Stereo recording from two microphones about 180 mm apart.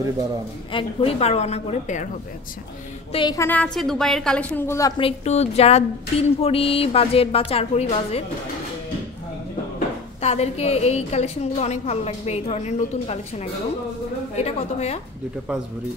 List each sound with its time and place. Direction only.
0.7 s a woman's voice: 35° left (ahead or behind)
3.1 s a woman's voice: 30° left (ahead or behind)
3.3 s a woman's voice: 10° left (ahead or behind)
5.0 s a woman's voice: 35° left (ahead or behind)
10.2 s a woman's voice: 35° left (ahead or behind)